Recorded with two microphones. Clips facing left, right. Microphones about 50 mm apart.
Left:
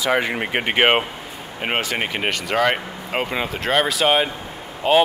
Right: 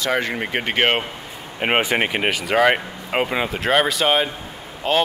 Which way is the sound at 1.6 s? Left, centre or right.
Right.